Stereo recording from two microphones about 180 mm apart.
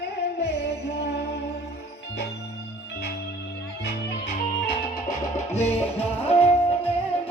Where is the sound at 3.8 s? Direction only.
65° left (ahead or behind).